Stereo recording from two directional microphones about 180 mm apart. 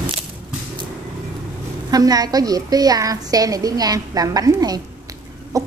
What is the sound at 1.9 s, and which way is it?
A woman's voice, 20° right (ahead or behind).